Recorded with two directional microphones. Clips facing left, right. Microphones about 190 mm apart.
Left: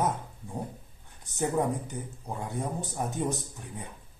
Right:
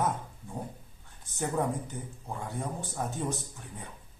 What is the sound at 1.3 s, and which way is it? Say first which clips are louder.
A man's voice: left 3 dB; 15° left (ahead or behind).